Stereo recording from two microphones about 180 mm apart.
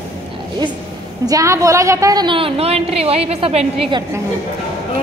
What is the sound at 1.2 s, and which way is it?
A woman's voice, 20° right (ahead or behind).